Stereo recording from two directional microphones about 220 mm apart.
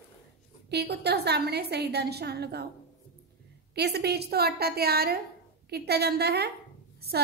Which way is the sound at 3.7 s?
50° right (ahead or behind).